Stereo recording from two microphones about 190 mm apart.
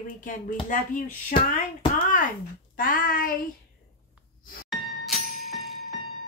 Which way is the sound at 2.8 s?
45° left (ahead or behind).